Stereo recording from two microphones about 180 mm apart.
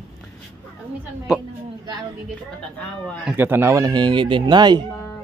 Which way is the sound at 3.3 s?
10° right (ahead or behind).